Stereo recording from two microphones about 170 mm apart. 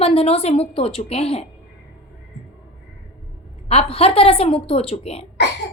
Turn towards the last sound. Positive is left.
turn(degrees=35)  # may be behind; listen again after turning